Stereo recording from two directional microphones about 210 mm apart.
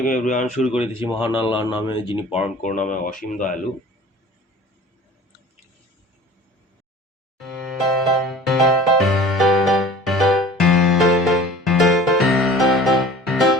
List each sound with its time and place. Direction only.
0.0 s speech: 40° left (ahead or behind)
1.2 s speech: 25° left (ahead or behind)
2.6 s speech: 40° left (ahead or behind)
7.3 s music: centre (ahead or behind)